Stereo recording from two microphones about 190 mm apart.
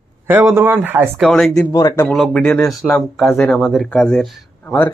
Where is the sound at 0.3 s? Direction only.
10° right (ahead or behind).